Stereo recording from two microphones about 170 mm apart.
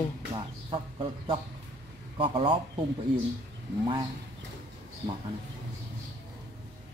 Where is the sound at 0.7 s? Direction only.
30° right (ahead or behind).